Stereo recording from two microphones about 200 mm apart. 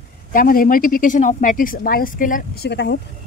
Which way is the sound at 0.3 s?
45° left (ahead or behind).